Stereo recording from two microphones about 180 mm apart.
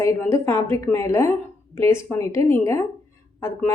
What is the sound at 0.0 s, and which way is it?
A woman's voice, 15° left (ahead or behind).